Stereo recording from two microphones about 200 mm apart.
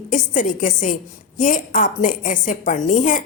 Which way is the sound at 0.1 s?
40° left (ahead or behind).